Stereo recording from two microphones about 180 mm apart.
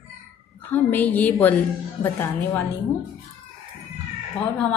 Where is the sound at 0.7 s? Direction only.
10° left (ahead or behind).